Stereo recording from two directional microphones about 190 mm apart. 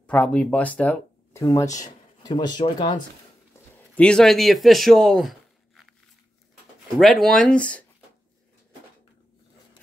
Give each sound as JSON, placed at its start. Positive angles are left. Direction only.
{"t": 0.0, "sound": "speech", "side_deg": 5}
{"t": 3.7, "sound": "speech", "side_deg": 5}
{"t": 7.0, "sound": "speech", "side_deg": 0}